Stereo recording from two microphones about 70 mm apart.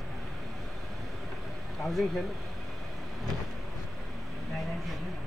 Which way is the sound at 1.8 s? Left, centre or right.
Centre.